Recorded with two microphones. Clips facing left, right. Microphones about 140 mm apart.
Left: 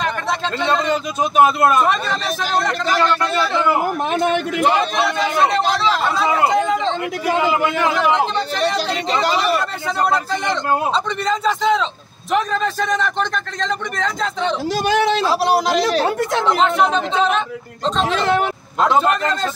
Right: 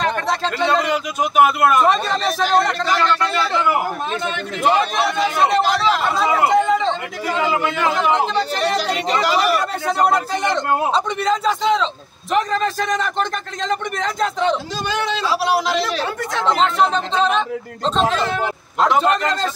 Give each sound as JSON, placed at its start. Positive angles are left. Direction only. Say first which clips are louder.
{"t": 0.0, "sound": "a sound", "louder": "right 1 dB", "side_deg": 0}
{"t": 0.7, "sound": "a man's voice", "louder": "even", "side_deg": -10}
{"t": 1.2, "sound": "speech", "louder": "left 1 dB", "side_deg": 25}
{"t": 1.8, "sound": "a man's voice", "louder": "right 1 dB", "side_deg": 0}
{"t": 4.1, "sound": "speech", "louder": "left 7 dB", "side_deg": 55}
{"t": 6.1, "sound": "speech", "louder": "right 2 dB", "side_deg": -5}
{"t": 7.3, "sound": "speech", "louder": "left 1 dB", "side_deg": 15}
{"t": 8.4, "sound": "speech", "louder": "even", "side_deg": -40}
{"t": 10.9, "sound": "a man's voice", "louder": "right 1 dB", "side_deg": 0}
{"t": 14.9, "sound": "a man's voice", "louder": "left 5 dB", "side_deg": 65}
{"t": 15.5, "sound": "speech", "louder": "left 3 dB", "side_deg": 40}
{"t": 16.4, "sound": "a man's voice", "louder": "right 1 dB", "side_deg": 5}
{"t": 19.0, "sound": "a man's voice", "louder": "even", "side_deg": 5}